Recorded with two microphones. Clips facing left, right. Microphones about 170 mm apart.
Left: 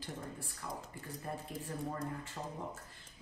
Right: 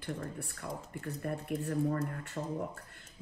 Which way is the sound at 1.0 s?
60° right (ahead or behind).